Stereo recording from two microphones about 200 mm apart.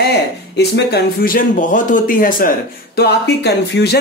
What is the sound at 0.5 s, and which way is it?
Speech, 55° left (ahead or behind).